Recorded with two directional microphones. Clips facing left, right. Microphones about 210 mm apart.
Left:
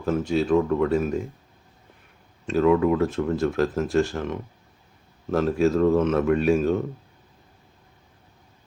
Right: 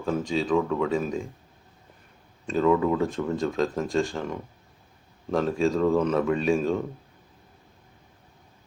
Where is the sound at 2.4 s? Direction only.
5° left (ahead or behind).